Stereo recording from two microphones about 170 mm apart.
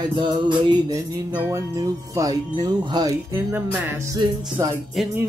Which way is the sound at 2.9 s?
20° right (ahead or behind).